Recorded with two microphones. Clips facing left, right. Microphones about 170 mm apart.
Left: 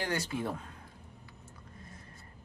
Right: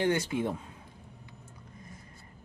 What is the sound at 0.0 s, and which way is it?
Speech, 20° right (ahead or behind).